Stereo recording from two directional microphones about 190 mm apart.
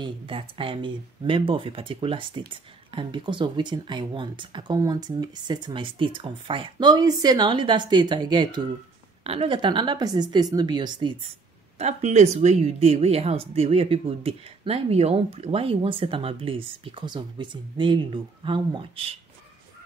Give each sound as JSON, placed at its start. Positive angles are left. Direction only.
{"t": 0.0, "sound": "speech", "side_deg": -30}
{"t": 11.8, "sound": "speech", "side_deg": -35}